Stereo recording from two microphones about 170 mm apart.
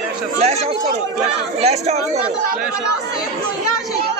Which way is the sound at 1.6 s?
40° right (ahead or behind).